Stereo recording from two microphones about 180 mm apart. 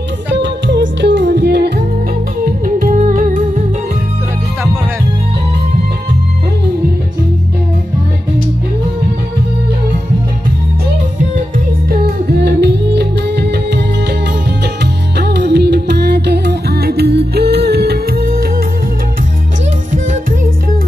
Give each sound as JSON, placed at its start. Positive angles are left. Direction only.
{"t": 0.3, "sound": "music", "side_deg": -75}
{"t": 2.6, "sound": "music", "side_deg": -50}
{"t": 11.9, "sound": "music", "side_deg": -60}